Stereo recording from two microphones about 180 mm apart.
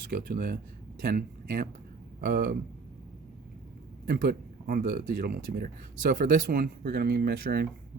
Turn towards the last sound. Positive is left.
turn(degrees=-60)  # may be behind; listen again after turning